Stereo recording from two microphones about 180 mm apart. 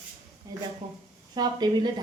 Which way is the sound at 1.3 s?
25° right (ahead or behind).